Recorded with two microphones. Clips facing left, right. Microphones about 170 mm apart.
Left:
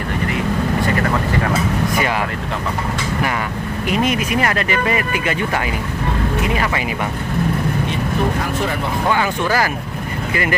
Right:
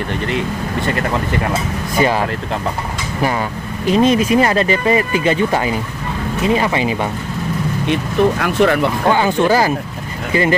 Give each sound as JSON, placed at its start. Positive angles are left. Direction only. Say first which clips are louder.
{"t": 3.8, "sound": "speech", "louder": "right 6 dB", "side_deg": -30}
{"t": 7.9, "sound": "speech", "louder": "right 5 dB", "side_deg": -70}
{"t": 9.1, "sound": "speech", "louder": "right 5 dB", "side_deg": -30}